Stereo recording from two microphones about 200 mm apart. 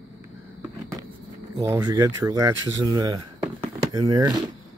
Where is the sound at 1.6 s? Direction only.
15° right (ahead or behind).